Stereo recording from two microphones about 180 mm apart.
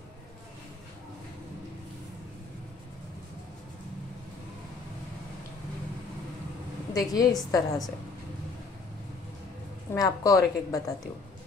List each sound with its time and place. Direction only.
6.9 s a woman's voice: 20° left (ahead or behind)
9.9 s a woman's voice: 20° left (ahead or behind)